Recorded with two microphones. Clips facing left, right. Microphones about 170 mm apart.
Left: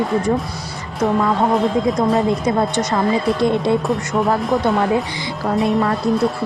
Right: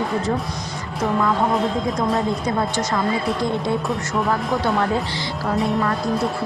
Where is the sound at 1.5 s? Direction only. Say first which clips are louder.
Left 4 dB; centre (ahead or behind).